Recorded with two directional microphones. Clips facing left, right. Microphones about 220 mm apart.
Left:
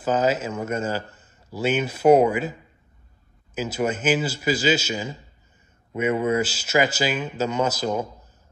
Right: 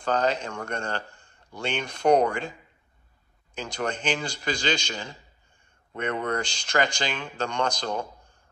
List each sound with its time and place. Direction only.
0.0 s a man's voice: 5° left (ahead or behind)
3.5 s a man's voice: 5° left (ahead or behind)